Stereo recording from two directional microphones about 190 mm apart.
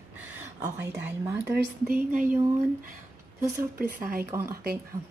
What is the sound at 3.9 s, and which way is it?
Speech, 50° right (ahead or behind).